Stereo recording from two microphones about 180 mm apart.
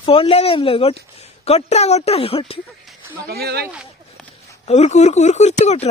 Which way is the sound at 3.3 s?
60° right (ahead or behind).